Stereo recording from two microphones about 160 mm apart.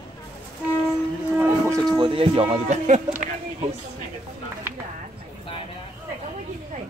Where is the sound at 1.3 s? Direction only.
15° right (ahead or behind).